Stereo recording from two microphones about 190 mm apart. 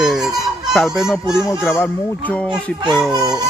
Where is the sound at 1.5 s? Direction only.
15° left (ahead or behind).